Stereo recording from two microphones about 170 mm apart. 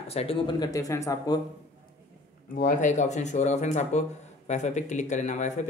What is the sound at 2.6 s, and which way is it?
Speech, 45° left (ahead or behind).